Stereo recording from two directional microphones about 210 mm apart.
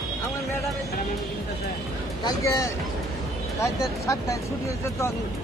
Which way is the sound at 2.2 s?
15° left (ahead or behind).